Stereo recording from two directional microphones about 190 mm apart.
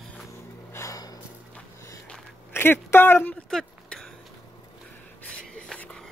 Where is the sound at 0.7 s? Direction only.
15° left (ahead or behind).